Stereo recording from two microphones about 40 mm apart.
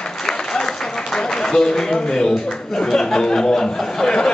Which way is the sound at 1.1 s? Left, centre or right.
Centre.